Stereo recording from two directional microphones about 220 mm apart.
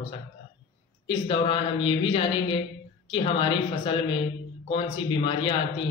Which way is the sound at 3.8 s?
25° left (ahead or behind).